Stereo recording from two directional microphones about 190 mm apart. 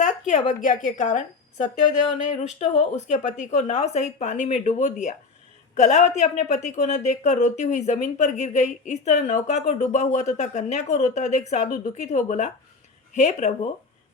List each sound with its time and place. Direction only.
0.0 s a woman's voice: 40° left (ahead or behind)